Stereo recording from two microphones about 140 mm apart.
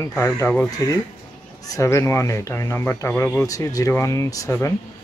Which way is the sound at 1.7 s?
20° left (ahead or behind).